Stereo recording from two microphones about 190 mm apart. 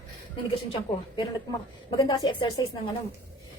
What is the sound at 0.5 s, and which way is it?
A woman's voice, 25° left (ahead or behind).